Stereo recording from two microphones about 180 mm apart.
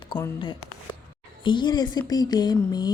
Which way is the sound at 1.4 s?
25° left (ahead or behind).